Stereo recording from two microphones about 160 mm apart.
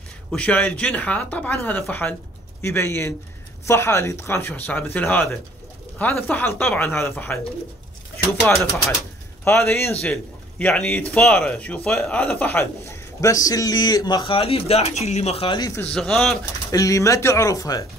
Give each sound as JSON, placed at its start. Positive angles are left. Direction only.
{"t": 0.3, "sound": "a man's voice", "side_deg": 5}
{"t": 9.4, "sound": "a man's voice", "side_deg": 15}
{"t": 15.9, "sound": "speech", "side_deg": 0}
{"t": 16.7, "sound": "speech", "side_deg": 20}